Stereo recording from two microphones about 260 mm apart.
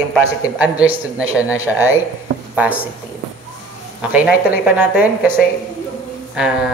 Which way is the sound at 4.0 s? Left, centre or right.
Centre.